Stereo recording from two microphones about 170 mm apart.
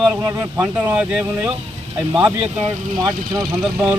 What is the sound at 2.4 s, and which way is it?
Speech, 30° right (ahead or behind).